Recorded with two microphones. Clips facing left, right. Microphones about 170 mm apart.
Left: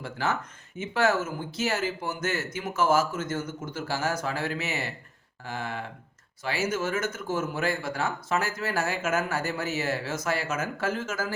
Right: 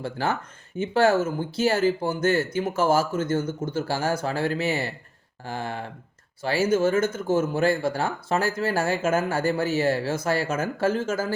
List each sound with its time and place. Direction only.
0.0 s speech: 30° right (ahead or behind)